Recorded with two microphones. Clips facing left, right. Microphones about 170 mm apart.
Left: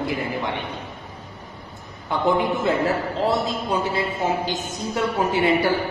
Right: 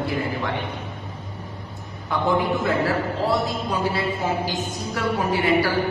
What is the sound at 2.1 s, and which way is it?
A man's voice, 20° left (ahead or behind).